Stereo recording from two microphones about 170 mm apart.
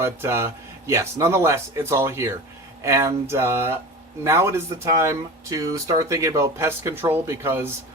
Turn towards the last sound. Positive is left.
turn(degrees=-15)  # may be behind; listen again after turning